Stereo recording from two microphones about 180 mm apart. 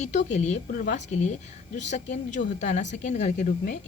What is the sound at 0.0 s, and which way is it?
A woman's voice, 40° left (ahead or behind).